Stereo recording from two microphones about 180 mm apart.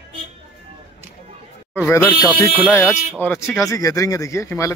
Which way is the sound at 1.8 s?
10° left (ahead or behind).